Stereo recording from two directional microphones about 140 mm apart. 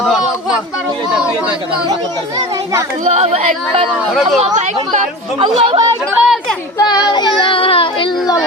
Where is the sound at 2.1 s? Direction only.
30° right (ahead or behind).